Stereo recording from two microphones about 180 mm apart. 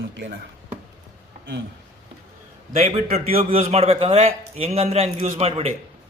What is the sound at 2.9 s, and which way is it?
A man's voice, 35° right (ahead or behind).